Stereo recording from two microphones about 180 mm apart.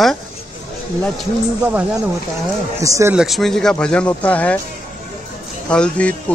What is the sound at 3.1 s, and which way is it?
Speech, centre (ahead or behind).